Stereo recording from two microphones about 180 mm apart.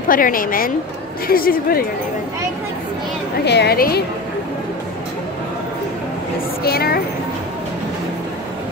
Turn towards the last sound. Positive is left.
turn(degrees=60)  # may be behind; listen again after turning